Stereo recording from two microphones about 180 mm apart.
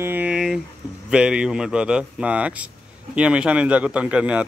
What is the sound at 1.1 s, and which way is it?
A man's voice, 5° right (ahead or behind).